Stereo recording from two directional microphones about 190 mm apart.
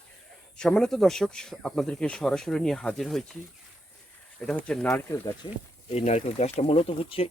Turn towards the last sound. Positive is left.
turn(degrees=30)  # may be behind; listen again after turning